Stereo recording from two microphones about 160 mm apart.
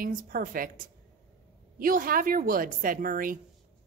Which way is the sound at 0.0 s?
60° right (ahead or behind).